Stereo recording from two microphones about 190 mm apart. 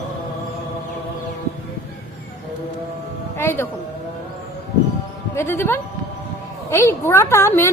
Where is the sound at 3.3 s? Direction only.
10° left (ahead or behind).